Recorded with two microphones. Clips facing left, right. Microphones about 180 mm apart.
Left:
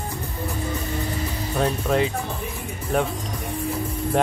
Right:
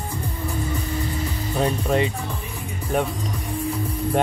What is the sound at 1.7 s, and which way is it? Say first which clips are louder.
Speech: even; centre (ahead or behind).